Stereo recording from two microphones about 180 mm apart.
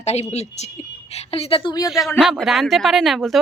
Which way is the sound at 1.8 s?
Centre (ahead or behind).